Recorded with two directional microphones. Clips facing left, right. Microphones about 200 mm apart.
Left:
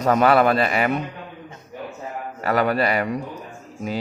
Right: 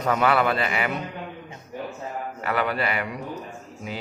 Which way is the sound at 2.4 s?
40° left (ahead or behind).